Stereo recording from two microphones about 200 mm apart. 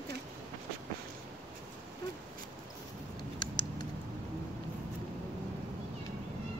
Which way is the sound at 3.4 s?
20° left (ahead or behind).